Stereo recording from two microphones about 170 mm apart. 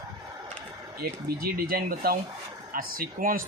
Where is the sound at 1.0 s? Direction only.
65° right (ahead or behind).